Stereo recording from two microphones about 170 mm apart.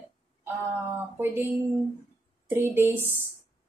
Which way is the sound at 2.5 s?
10° right (ahead or behind).